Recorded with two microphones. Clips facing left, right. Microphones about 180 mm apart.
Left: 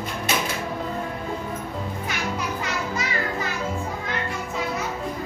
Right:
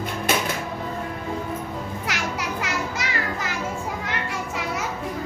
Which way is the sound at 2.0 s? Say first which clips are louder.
Even; 85° right.